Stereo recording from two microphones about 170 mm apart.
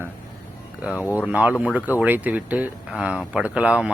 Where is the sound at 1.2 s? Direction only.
10° right (ahead or behind).